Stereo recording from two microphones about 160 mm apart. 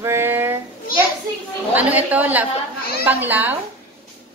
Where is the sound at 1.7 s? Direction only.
10° right (ahead or behind).